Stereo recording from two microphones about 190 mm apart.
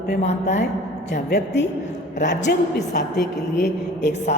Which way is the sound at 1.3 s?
65° left (ahead or behind).